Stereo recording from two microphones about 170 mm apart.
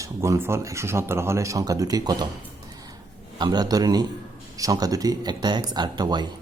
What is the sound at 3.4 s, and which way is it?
A man's voice, 25° right (ahead or behind).